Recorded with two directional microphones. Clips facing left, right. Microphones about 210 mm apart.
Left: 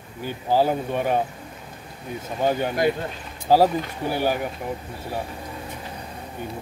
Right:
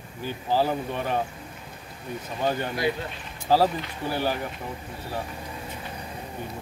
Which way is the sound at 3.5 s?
15° left (ahead or behind).